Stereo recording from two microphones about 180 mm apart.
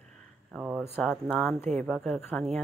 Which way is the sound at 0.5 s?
5° right (ahead or behind).